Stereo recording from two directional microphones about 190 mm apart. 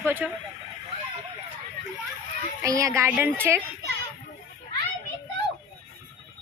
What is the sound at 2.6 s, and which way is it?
Speech, 15° right (ahead or behind).